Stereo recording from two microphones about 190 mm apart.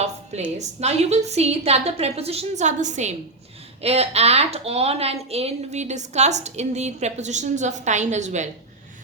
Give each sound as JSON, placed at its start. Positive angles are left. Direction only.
{"t": 0.6, "sound": "a woman's voice", "side_deg": -35}